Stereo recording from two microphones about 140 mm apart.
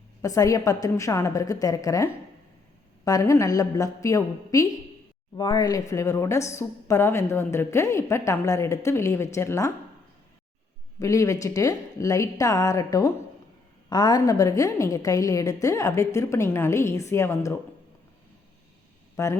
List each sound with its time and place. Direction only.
0.2 s a woman's voice: 25° left (ahead or behind)
11.0 s a woman's voice: 25° left (ahead or behind)
19.1 s speech: 20° left (ahead or behind)